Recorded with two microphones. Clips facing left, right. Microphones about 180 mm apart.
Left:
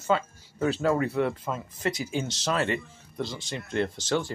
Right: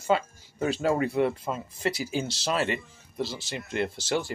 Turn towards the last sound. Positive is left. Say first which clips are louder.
# left 1 dB
turn(degrees=-10)  # may be behind; listen again after turning